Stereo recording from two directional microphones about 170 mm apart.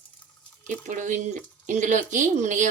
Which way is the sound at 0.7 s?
50° right (ahead or behind).